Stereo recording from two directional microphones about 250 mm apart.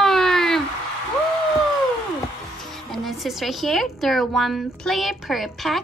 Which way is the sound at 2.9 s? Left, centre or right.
Centre.